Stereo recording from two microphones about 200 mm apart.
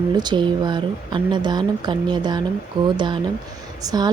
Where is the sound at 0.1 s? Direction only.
20° right (ahead or behind).